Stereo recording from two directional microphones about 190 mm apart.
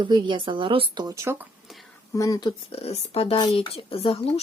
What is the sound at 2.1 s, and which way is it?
Speech, 20° left (ahead or behind).